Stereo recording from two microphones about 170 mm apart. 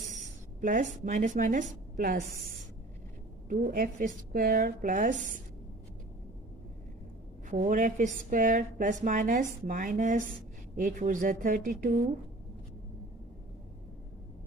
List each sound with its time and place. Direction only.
0.6 s a woman's voice: 50° right (ahead or behind)
3.4 s a woman's voice: 55° right (ahead or behind)
7.4 s a woman's voice: 50° right (ahead or behind)